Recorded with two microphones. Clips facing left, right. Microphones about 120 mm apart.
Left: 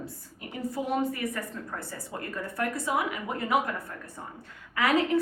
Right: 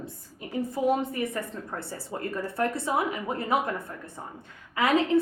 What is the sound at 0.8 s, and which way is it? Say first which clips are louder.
A woman's voice: right 3 dB; 20° right (ahead or behind).